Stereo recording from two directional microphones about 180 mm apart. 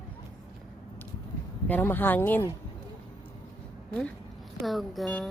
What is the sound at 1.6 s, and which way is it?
Speech, 10° left (ahead or behind).